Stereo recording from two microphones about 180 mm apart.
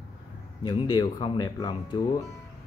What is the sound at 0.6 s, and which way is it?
Speech, 25° left (ahead or behind).